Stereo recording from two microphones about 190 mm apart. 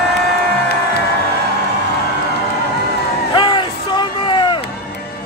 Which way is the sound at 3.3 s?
25° left (ahead or behind).